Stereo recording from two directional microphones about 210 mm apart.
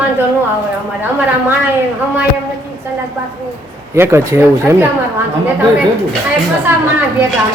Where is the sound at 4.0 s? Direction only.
10° right (ahead or behind).